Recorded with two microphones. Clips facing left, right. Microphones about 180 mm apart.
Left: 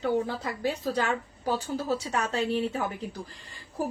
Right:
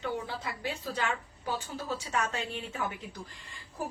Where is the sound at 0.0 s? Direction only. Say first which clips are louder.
Left 8 dB; 40° left (ahead or behind).